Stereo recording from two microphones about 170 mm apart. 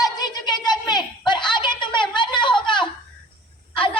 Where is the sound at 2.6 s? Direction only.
30° left (ahead or behind).